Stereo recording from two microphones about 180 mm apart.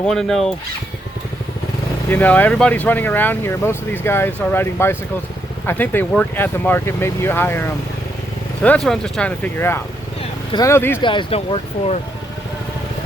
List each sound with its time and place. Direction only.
0.0 s speech: 5° left (ahead or behind)
2.0 s speech: 10° left (ahead or behind)
11.0 s speech: 25° left (ahead or behind)